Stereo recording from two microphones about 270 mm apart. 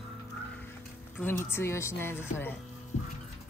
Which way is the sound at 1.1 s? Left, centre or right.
Centre.